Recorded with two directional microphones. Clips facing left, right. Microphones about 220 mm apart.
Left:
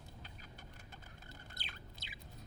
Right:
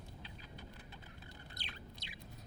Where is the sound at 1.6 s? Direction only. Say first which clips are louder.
Right 2 dB; centre (ahead or behind).